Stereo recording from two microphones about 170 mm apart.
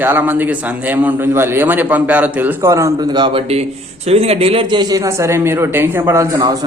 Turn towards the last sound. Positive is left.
turn(degrees=-20)  # may be behind; listen again after turning